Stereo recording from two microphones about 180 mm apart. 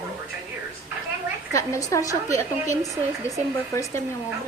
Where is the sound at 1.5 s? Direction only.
15° left (ahead or behind).